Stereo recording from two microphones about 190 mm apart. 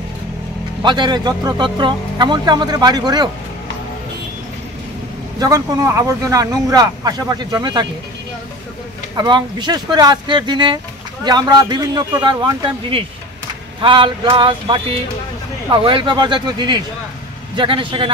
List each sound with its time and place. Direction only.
0.8 s speech: 25° right (ahead or behind)
5.4 s speech: 20° right (ahead or behind)
9.1 s speech: 25° right (ahead or behind)